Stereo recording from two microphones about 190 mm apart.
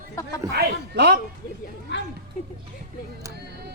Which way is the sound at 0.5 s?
60° right (ahead or behind).